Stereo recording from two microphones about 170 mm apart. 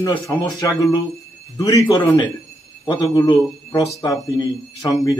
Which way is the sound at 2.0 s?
25° left (ahead or behind).